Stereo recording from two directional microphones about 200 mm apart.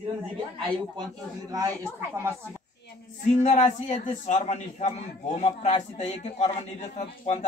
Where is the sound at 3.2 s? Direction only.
35° left (ahead or behind).